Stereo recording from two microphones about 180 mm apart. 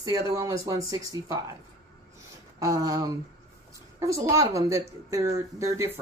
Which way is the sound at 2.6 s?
20° right (ahead or behind).